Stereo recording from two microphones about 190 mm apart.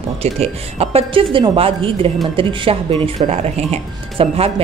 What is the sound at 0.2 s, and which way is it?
Speech, 30° right (ahead or behind).